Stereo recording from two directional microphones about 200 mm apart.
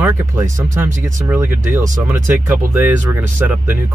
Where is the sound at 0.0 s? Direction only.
10° right (ahead or behind).